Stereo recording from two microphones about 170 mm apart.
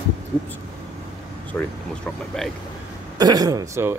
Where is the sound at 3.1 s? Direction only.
25° right (ahead or behind).